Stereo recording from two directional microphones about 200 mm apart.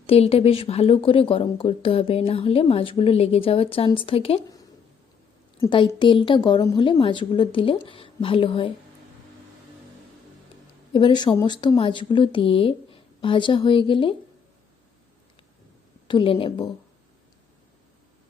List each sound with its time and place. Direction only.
0.1 s a woman's voice: 30° left (ahead or behind)
5.5 s a woman's voice: 25° left (ahead or behind)
10.9 s a woman's voice: 25° left (ahead or behind)
16.0 s a woman's voice: 25° left (ahead or behind)